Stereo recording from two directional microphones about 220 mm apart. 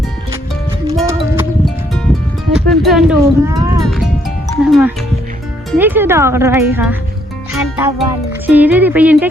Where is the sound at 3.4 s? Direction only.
15° right (ahead or behind).